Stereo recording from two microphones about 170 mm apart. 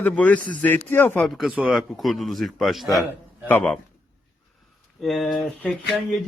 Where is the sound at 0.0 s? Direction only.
10° left (ahead or behind).